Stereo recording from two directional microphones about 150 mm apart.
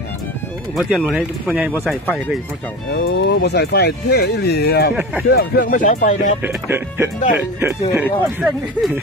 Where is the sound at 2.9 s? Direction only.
90° left.